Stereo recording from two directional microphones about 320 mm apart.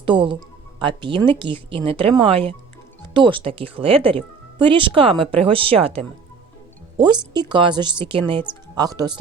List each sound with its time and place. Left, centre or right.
0.0 s speech: centre